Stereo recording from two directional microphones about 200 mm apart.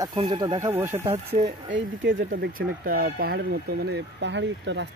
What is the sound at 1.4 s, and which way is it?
Speech, 70° right (ahead or behind).